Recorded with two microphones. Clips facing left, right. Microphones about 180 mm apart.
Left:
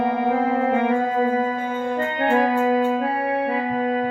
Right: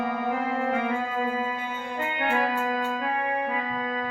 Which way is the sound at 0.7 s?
45° left (ahead or behind).